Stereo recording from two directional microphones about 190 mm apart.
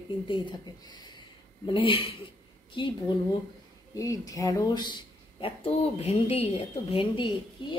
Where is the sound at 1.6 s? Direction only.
25° left (ahead or behind).